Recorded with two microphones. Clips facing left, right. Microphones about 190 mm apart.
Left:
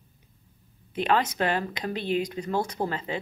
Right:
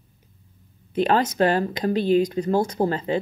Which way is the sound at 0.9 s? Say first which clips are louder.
Right 4 dB; 40° right (ahead or behind).